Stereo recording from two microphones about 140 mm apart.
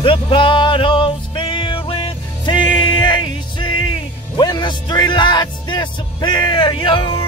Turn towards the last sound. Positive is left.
turn(degrees=40)  # may be behind; listen again after turning